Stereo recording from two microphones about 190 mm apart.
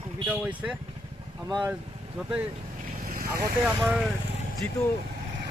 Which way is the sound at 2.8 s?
45° right (ahead or behind).